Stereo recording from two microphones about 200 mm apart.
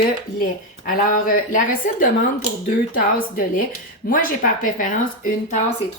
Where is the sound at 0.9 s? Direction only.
45° left (ahead or behind).